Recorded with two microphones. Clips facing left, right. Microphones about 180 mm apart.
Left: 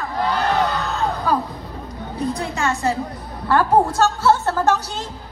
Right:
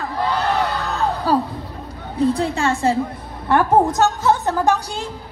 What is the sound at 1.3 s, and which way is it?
A woman's voice, 30° right (ahead or behind).